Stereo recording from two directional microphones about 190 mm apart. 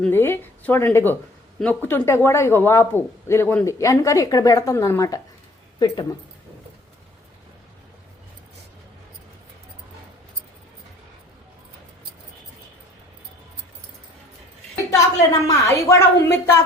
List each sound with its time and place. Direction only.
0.0 s speech: 10° left (ahead or behind)
14.8 s a woman's voice: 20° left (ahead or behind)